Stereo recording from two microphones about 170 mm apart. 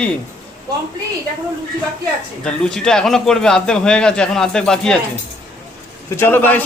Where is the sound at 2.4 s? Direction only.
5° left (ahead or behind).